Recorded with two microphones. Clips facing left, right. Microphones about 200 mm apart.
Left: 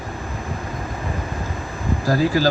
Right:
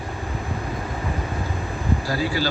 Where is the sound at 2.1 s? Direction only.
45° left (ahead or behind).